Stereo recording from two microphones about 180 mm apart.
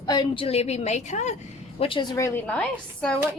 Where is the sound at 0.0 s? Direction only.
25° left (ahead or behind); by 1.4 s 40° left (ahead or behind).